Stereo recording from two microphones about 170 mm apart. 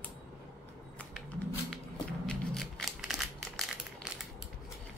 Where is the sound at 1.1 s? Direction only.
Centre (ahead or behind).